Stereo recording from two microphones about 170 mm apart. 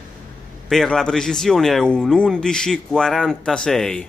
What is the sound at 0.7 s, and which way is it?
Speech, 5° left (ahead or behind).